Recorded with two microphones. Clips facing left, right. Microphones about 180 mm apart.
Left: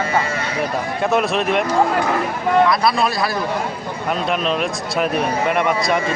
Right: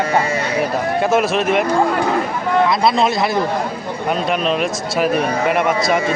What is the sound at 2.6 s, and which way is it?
Speech, 20° right (ahead or behind).